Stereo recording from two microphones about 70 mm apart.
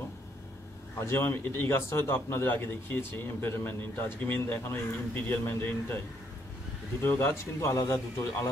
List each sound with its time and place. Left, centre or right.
0.9 s a man's voice: left
7.0 s a man's voice: left
7.6 s a man's voice: left